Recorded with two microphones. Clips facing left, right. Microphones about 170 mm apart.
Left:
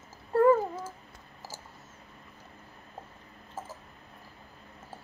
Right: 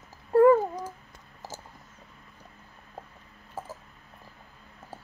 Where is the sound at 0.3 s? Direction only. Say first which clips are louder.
Right 4 dB; 15° right (ahead or behind).